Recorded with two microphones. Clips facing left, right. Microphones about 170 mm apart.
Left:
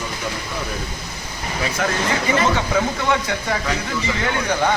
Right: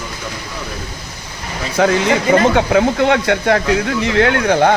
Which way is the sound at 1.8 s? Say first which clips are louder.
Right 10 dB; 65° right (ahead or behind).